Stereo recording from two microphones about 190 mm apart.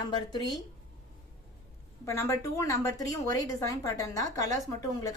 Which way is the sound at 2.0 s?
15° left (ahead or behind).